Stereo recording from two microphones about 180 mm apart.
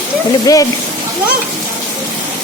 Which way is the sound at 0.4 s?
20° left (ahead or behind).